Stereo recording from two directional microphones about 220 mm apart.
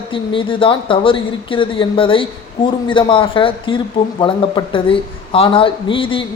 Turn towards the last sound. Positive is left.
turn(degrees=25)  # may be behind; listen again after turning